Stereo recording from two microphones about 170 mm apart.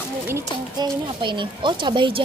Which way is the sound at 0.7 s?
25° right (ahead or behind).